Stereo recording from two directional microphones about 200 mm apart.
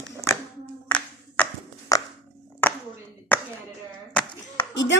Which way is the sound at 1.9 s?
15° left (ahead or behind).